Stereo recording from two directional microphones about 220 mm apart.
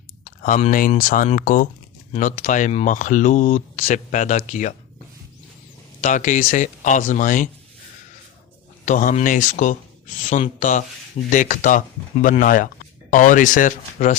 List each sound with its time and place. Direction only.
0.3 s speech: 35° left (ahead or behind)
6.0 s speech: 35° left (ahead or behind)
8.8 s speech: 35° left (ahead or behind)